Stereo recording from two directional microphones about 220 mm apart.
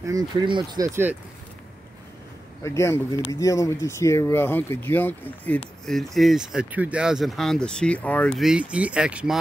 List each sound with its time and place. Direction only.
0.0 s speech: 15° right (ahead or behind)
2.6 s speech: 10° left (ahead or behind)
8.4 s speech: 5° right (ahead or behind)